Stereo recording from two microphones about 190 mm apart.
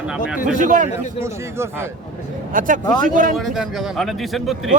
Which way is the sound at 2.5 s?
45° right (ahead or behind).